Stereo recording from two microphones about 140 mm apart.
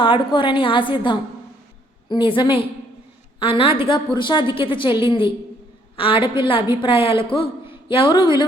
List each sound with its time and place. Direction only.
0.0 s a woman's voice: 35° left (ahead or behind)